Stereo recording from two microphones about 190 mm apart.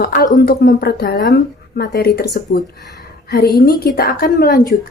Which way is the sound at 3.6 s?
50° left (ahead or behind).